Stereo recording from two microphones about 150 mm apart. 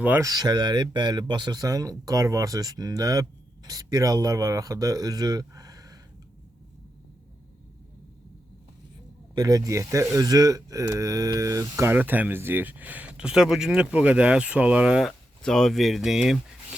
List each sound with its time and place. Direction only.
0.0 s speech: 15° right (ahead or behind)
0.3 s speech: 25° right (ahead or behind)
9.3 s speech: 25° right (ahead or behind); by 16.4 s 5° right (ahead or behind)